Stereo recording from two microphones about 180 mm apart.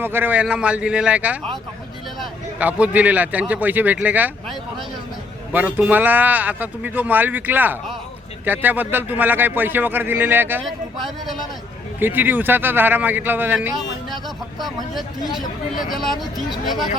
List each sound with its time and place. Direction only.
0.0 s a man's voice: 10° right (ahead or behind)
10.6 s speech: centre (ahead or behind)
11.9 s speech: 10° right (ahead or behind)
14.3 s speech: centre (ahead or behind)